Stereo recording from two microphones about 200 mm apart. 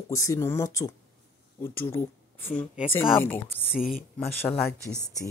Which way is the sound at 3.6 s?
Centre (ahead or behind).